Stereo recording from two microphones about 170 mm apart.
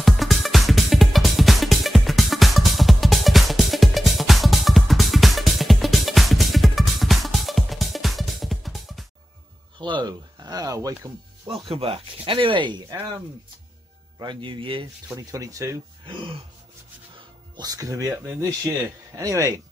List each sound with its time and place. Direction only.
0.0 s music: centre (ahead or behind)
9.8 s a sound: 30° right (ahead or behind)
11.6 s speech: 35° right (ahead or behind)
14.1 s speech: 25° right (ahead or behind)
15.1 s speech: 20° right (ahead or behind)
17.6 s speech: 20° right (ahead or behind)